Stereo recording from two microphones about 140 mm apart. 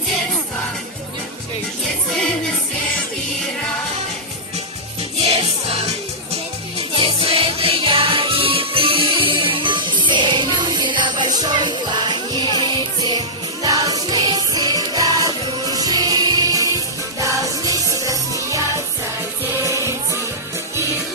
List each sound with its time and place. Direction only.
5.2 s music: 45° right (ahead or behind); by 20.1 s 20° right (ahead or behind)